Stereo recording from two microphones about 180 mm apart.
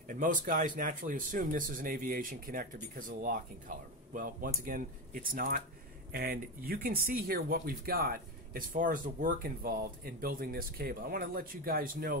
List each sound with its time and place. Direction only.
0.1 s speech: 50° right (ahead or behind)